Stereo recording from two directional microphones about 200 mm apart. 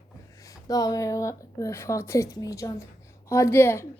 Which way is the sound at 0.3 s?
15° left (ahead or behind).